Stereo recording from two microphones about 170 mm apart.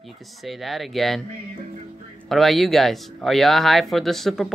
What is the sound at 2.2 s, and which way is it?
Speech, centre (ahead or behind).